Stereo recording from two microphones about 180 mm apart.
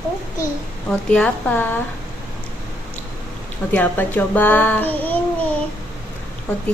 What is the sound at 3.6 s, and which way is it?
A child's voice, 10° left (ahead or behind).